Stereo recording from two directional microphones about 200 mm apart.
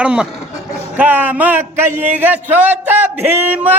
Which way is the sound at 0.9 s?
10° right (ahead or behind).